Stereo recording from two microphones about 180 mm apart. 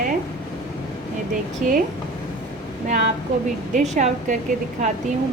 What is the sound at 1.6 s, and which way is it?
Speech, 50° right (ahead or behind).